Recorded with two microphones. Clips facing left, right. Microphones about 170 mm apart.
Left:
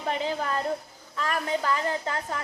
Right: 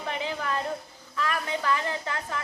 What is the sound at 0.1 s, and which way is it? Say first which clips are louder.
A woman's voice: left 3 dB; 40° left (ahead or behind).